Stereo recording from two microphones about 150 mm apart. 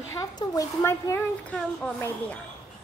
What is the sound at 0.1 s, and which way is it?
Speech, 20° left (ahead or behind).